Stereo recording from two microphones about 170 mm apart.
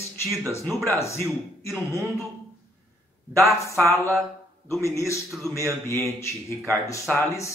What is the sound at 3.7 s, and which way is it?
A man's voice, 15° left (ahead or behind).